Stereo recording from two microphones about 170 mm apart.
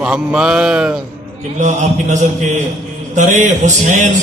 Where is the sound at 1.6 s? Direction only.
45° right (ahead or behind).